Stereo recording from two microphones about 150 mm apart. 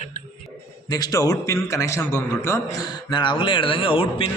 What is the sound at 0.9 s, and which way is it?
A man's voice, 25° left (ahead or behind).